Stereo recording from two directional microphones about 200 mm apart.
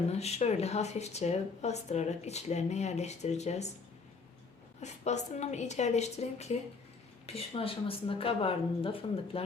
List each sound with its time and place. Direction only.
0.1 s speech: 30° left (ahead or behind)
4.8 s speech: 35° left (ahead or behind)